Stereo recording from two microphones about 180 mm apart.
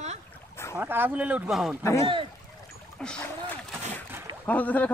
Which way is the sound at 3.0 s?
5° left (ahead or behind).